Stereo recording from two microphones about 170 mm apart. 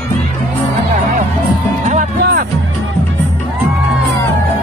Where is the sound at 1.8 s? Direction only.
45° right (ahead or behind).